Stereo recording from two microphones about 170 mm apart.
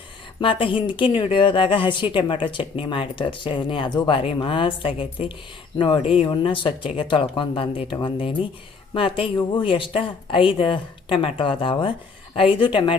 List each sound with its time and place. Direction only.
0.4 s speech: 30° left (ahead or behind)